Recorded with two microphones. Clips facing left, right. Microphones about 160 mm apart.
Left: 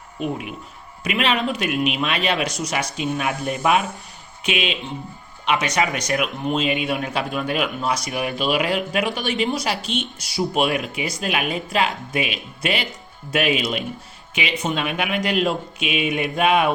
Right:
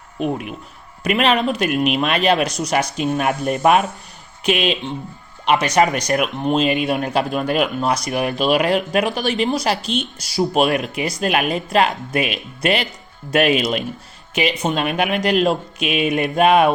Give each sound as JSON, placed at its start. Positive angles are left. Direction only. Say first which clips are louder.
{"t": 1.0, "sound": "speech", "louder": "right 4 dB", "side_deg": -45}